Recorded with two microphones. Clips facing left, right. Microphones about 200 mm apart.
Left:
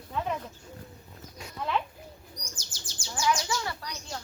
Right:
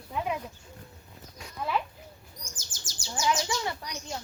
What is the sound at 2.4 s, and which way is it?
Bird, 50° right (ahead or behind).